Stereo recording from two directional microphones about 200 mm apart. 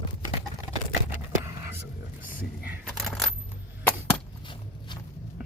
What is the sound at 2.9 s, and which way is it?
Coin, centre (ahead or behind).